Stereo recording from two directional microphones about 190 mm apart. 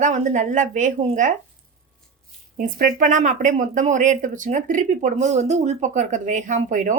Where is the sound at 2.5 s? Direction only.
45° right (ahead or behind).